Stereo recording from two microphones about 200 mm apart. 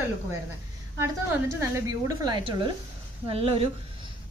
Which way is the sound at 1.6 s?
15° right (ahead or behind).